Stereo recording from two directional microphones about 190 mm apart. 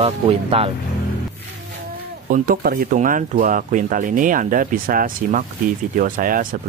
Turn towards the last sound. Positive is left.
turn(degrees=-45)  # may be behind; listen again after turning